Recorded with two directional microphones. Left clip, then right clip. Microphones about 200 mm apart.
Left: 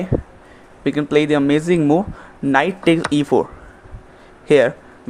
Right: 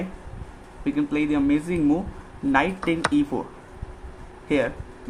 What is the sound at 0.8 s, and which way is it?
Speech, 45° left (ahead or behind).